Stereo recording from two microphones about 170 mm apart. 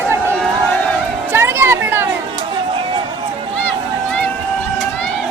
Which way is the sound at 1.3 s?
15° right (ahead or behind).